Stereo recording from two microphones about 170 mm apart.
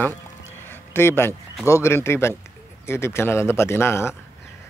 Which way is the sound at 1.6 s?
15° left (ahead or behind).